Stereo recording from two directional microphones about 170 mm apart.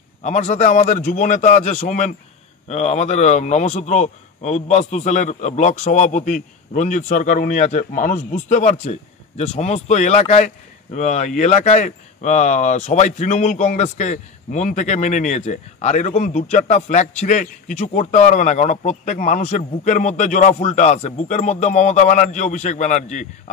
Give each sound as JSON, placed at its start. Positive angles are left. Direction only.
{"t": 0.2, "sound": "speech", "side_deg": 45}